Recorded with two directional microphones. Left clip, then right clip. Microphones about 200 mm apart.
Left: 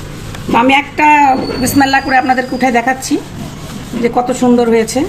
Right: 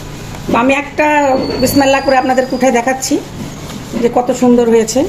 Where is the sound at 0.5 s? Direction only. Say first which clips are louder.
Left 2 dB; 40° left (ahead or behind).